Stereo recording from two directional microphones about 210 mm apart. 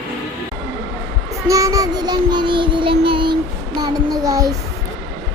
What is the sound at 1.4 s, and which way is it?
Child singing, 15° right (ahead or behind).